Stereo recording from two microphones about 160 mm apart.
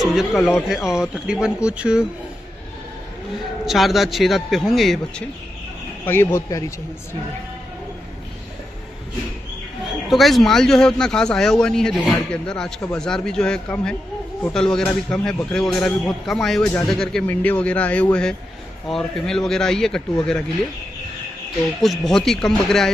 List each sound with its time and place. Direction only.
0.0 s a man's voice: centre (ahead or behind)
3.6 s a man's voice: centre (ahead or behind)
6.0 s speech: 15° left (ahead or behind)
9.8 s a man's voice: centre (ahead or behind)
21.8 s a man's voice: centre (ahead or behind)